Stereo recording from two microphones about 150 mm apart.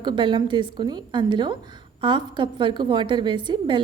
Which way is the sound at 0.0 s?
30° right (ahead or behind).